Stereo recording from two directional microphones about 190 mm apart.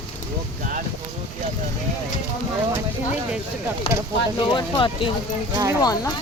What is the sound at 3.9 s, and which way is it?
Speech, 30° left (ahead or behind).